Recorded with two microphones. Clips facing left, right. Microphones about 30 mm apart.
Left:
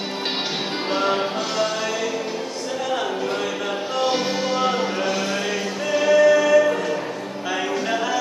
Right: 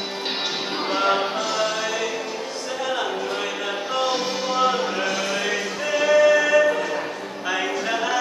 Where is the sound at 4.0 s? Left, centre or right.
Centre.